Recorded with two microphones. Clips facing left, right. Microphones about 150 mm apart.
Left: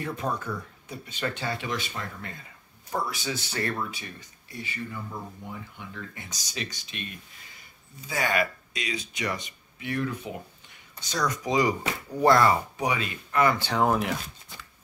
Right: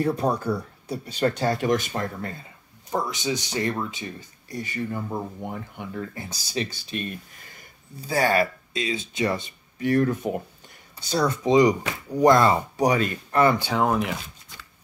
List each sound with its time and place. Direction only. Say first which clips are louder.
0.0 s speech: right 8 dB; 35° right (ahead or behind)
2.9 s speech: right 4 dB; 20° right (ahead or behind)
4.5 s speech: right 7 dB; 45° right (ahead or behind)
5.9 s speech: right 9 dB; 35° right (ahead or behind)
9.8 s speech: right 9 dB; 45° right (ahead or behind)
11.1 s speech: right 6 dB; 30° right (ahead or behind)
12.7 s speech: right 7 dB; 40° right (ahead or behind)
13.7 s speech: right 1 dB; centre (ahead or behind)